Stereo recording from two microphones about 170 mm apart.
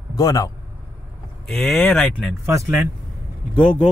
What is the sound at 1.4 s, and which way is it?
Speech, 5° left (ahead or behind).